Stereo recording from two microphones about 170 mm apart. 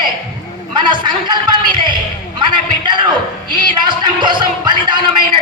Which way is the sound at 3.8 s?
25° right (ahead or behind).